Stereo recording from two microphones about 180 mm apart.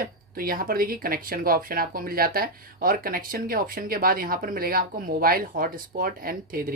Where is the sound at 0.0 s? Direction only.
50° right (ahead or behind).